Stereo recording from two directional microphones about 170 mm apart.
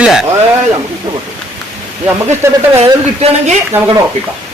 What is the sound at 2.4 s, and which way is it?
Speech, 15° right (ahead or behind).